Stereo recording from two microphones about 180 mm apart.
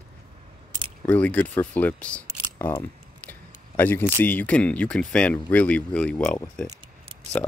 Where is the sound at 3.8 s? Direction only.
10° left (ahead or behind).